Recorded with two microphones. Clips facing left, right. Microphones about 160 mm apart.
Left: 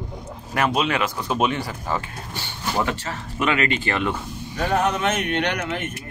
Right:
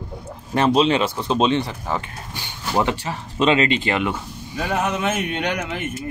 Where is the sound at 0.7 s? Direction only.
30° right (ahead or behind).